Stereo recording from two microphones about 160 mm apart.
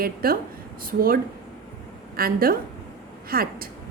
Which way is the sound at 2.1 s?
65° right (ahead or behind).